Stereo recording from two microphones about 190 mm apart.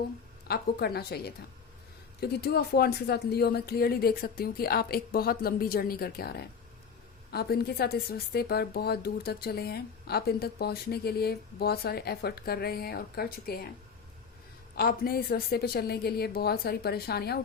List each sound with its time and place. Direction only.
0.4 s speech: 55° left (ahead or behind)
14.8 s speech: 55° left (ahead or behind)